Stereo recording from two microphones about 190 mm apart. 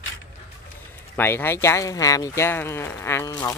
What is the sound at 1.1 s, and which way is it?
Speech, 10° left (ahead or behind).